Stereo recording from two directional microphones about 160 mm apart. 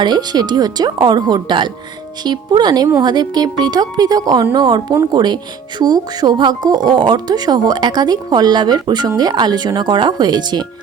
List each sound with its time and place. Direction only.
0.0 s speech: 25° right (ahead or behind)